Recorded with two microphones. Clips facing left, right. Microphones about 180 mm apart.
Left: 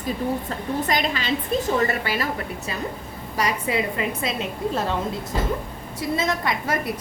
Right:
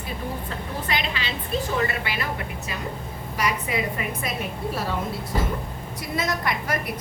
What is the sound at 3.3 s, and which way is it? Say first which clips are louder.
Speech: left 2 dB; 35° left (ahead or behind).